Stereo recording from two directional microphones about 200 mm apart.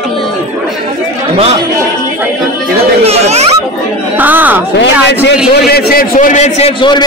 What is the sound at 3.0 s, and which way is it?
Speech, 30° right (ahead or behind).